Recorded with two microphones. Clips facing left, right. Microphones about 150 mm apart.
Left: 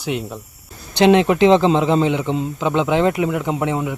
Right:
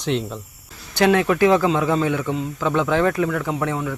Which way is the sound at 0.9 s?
20° left (ahead or behind).